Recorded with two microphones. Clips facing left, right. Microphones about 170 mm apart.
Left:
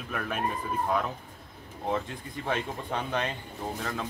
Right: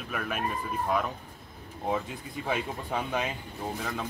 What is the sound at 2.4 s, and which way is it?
Speech, 10° right (ahead or behind).